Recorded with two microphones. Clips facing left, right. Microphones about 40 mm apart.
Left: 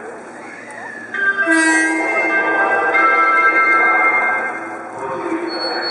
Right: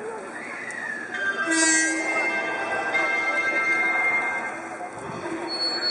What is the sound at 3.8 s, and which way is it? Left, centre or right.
Music, left.